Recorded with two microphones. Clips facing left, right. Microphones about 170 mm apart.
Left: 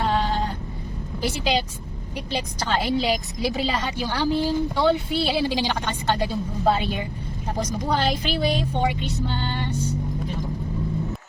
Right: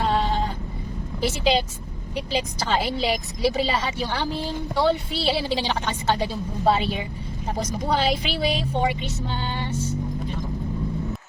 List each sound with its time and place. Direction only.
0.0 s sheep: centre (ahead or behind)
1.2 s a woman's voice: centre (ahead or behind)
7.9 s music: 5° right (ahead or behind)